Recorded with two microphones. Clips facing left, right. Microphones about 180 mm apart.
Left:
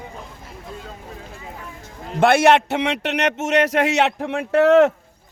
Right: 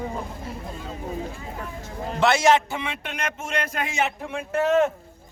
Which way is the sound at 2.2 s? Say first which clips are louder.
Left 5 dB; 60° left (ahead or behind).